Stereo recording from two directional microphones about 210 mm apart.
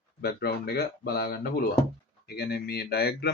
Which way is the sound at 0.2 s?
50° left (ahead or behind).